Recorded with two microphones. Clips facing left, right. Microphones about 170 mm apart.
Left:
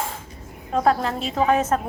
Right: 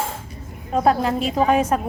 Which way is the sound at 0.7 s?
15° right (ahead or behind).